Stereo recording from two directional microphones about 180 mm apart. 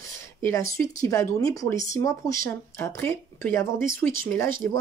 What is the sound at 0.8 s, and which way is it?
A woman's voice, 15° left (ahead or behind).